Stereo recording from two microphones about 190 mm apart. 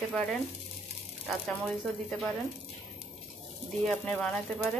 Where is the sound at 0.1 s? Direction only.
5° left (ahead or behind).